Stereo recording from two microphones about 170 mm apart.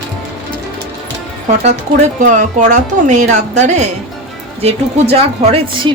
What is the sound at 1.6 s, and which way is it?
Speech, 45° right (ahead or behind).